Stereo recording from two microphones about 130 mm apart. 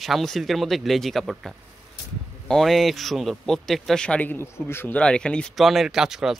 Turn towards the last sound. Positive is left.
turn(degrees=-5)  # may be behind; listen again after turning